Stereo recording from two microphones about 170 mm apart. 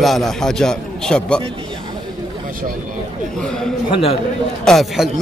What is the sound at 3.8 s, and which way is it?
Speech, 30° left (ahead or behind).